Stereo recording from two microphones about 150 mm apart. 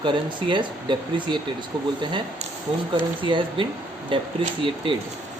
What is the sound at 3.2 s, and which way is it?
Speech, 35° right (ahead or behind).